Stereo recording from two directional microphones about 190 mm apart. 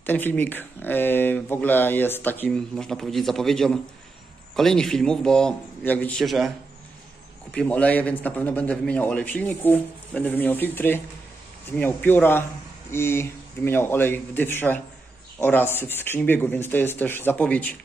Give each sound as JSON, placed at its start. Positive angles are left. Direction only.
{"t": 0.0, "sound": "a man's voice", "side_deg": 10}
{"t": 7.5, "sound": "speech", "side_deg": 5}